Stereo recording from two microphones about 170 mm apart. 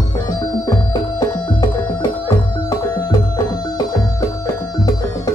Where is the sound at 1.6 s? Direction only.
20° left (ahead or behind).